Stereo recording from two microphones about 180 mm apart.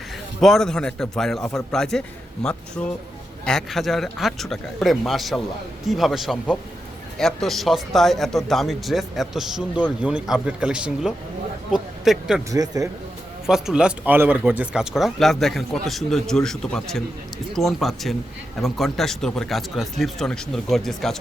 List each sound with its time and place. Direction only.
0.3 s speech: centre (ahead or behind)
12.5 s speech: 20° right (ahead or behind)
13.5 s speech: 5° right (ahead or behind)